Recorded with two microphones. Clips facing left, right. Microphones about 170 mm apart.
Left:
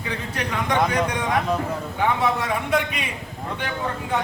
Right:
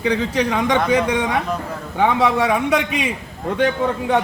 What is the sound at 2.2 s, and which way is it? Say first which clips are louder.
Speech: right 6 dB; 90° right.